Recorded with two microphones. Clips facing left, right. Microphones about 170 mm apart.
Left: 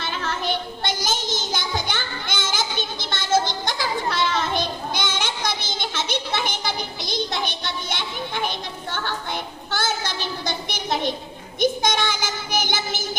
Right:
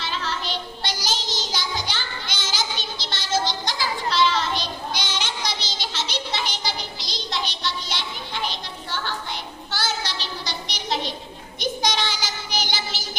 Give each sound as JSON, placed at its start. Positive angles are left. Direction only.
{"t": 0.0, "sound": "child singing", "side_deg": 50}